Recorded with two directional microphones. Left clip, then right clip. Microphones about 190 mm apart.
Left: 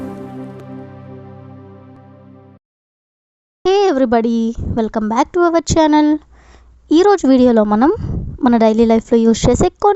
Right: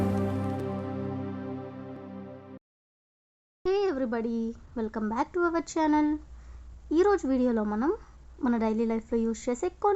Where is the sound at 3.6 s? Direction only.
50° left (ahead or behind).